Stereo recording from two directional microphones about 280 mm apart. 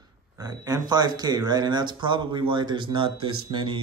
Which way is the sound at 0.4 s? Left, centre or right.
Centre.